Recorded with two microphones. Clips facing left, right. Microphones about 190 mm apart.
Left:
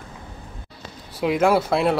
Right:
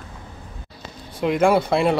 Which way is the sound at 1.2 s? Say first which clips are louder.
Right 1 dB; centre (ahead or behind).